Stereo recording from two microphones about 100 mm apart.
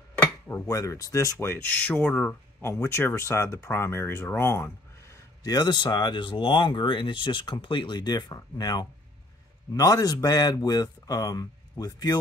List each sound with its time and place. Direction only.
0.5 s speech: 30° left (ahead or behind); by 2.3 s 10° left (ahead or behind)
2.6 s speech: 25° left (ahead or behind)
5.4 s speech: 40° left (ahead or behind)